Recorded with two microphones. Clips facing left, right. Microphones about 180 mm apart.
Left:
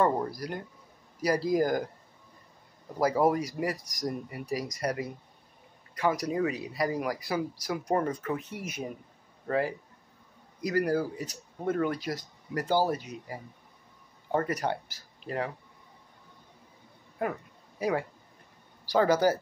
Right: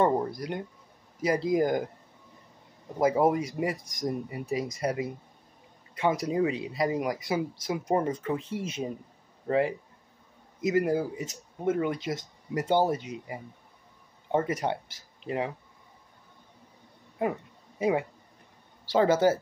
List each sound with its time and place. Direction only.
0.0 s speech: 25° right (ahead or behind)
3.0 s speech: 20° right (ahead or behind)
14.3 s speech: 20° right (ahead or behind)
17.2 s a sound: 25° right (ahead or behind)
18.9 s speech: 25° right (ahead or behind)